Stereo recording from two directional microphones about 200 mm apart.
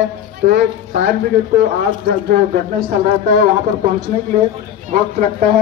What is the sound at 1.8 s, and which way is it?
Speech, 50° right (ahead or behind).